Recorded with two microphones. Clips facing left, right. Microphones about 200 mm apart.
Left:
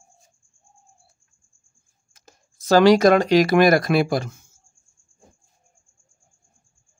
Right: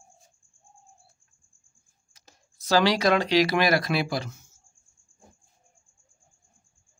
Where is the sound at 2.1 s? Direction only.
50° left (ahead or behind).